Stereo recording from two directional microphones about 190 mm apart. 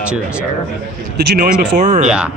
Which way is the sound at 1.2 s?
55° right (ahead or behind).